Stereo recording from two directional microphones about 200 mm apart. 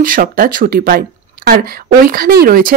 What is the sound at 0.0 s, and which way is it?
Speech, 45° right (ahead or behind).